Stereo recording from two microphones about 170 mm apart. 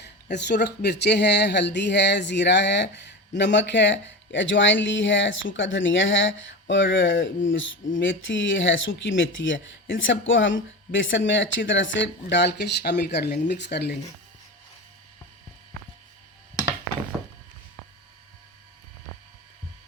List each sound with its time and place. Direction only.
0.0 s speech: 80° left